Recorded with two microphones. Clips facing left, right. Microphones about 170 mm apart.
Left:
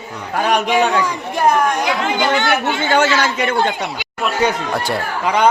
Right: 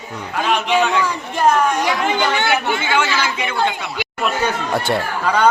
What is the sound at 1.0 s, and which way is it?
Speech, 15° left (ahead or behind).